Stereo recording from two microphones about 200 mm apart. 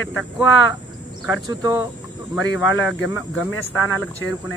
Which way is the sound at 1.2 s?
20° right (ahead or behind).